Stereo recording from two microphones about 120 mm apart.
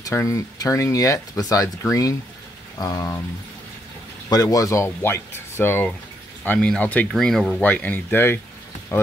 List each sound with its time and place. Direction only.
0.0 s speech: 25° left (ahead or behind)
4.3 s speech: 30° left (ahead or behind); by 7.6 s 5° left (ahead or behind)
7.6 s speech: 15° left (ahead or behind)